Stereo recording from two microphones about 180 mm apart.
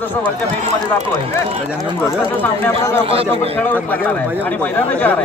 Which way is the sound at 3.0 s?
30° right (ahead or behind).